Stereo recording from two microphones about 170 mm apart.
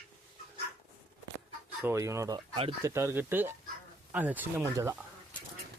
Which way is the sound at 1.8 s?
15° right (ahead or behind).